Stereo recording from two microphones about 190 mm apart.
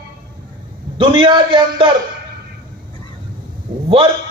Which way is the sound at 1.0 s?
25° right (ahead or behind).